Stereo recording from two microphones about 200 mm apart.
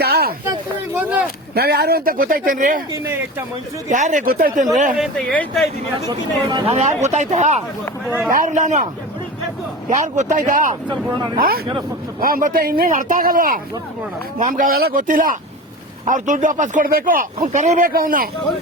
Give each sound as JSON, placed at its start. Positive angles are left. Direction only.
{"t": 0.0, "sound": "a sound", "side_deg": -50}
{"t": 0.4, "sound": "a sound", "side_deg": -15}
{"t": 1.5, "sound": "speech", "side_deg": -50}
{"t": 2.9, "sound": "speech", "side_deg": -10}
{"t": 3.8, "sound": "speech", "side_deg": -40}
{"t": 4.9, "sound": "speech", "side_deg": 0}
{"t": 6.0, "sound": "speech", "side_deg": -20}
{"t": 9.9, "sound": "speech", "side_deg": -40}
{"t": 10.8, "sound": "speech", "side_deg": -20}
{"t": 11.3, "sound": "speech", "side_deg": -50}